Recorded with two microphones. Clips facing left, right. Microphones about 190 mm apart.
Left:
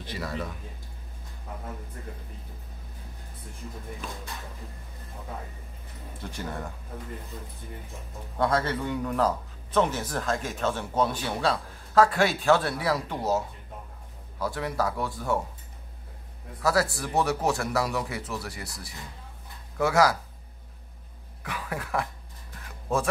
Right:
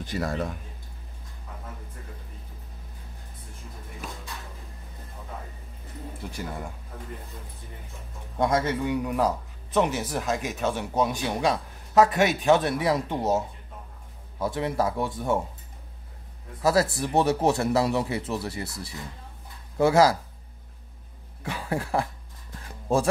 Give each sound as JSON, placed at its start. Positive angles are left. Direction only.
{"t": 0.0, "sound": "speech", "side_deg": -45}
{"t": 6.2, "sound": "speech", "side_deg": -10}
{"t": 8.4, "sound": "speech", "side_deg": -15}
{"t": 14.4, "sound": "a man's voice", "side_deg": -25}
{"t": 16.6, "sound": "a man's voice", "side_deg": -25}
{"t": 21.4, "sound": "speech", "side_deg": -30}